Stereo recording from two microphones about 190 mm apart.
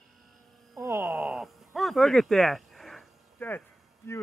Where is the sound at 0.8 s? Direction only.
15° right (ahead or behind).